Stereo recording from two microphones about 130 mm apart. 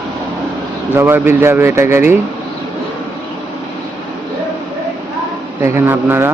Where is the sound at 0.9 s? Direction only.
15° right (ahead or behind).